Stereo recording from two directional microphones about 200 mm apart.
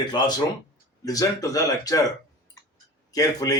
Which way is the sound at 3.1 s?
20° left (ahead or behind).